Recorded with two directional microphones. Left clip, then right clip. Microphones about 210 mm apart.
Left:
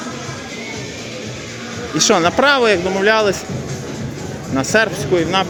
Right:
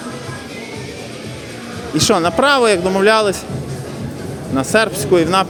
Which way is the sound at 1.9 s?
10° right (ahead or behind).